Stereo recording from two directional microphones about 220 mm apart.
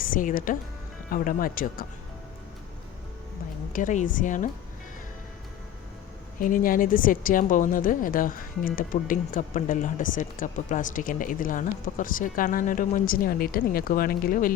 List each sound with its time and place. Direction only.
0.0 s speech: 40° left (ahead or behind)
3.7 s speech: 35° left (ahead or behind)
6.4 s speech: 40° left (ahead or behind)